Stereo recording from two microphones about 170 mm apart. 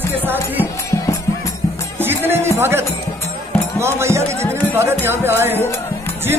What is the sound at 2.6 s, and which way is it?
Speech, 15° right (ahead or behind).